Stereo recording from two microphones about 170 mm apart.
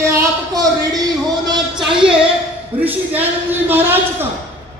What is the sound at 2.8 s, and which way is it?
A man's voice, 10° right (ahead or behind).